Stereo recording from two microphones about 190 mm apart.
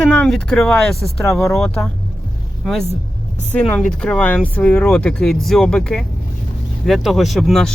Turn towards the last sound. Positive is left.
turn(degrees=0)  # may be behind; listen again after turning